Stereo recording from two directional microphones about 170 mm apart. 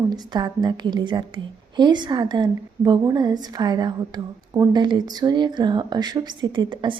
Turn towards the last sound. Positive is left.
turn(degrees=-25)  # may be behind; listen again after turning